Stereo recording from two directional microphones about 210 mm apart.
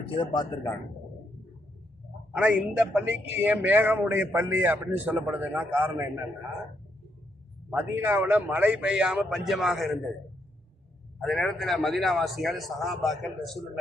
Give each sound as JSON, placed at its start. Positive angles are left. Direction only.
{"t": 0.2, "sound": "speech", "side_deg": 20}
{"t": 2.3, "sound": "a man's voice", "side_deg": -5}
{"t": 7.7, "sound": "a man's voice", "side_deg": -10}
{"t": 11.2, "sound": "a man's voice", "side_deg": 0}